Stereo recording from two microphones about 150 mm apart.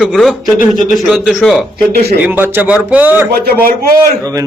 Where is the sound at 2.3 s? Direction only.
10° right (ahead or behind).